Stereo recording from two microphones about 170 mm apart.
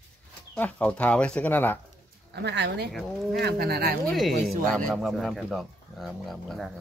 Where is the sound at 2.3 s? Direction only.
90° right.